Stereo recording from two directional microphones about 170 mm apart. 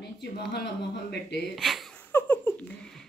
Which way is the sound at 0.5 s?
75° left (ahead or behind).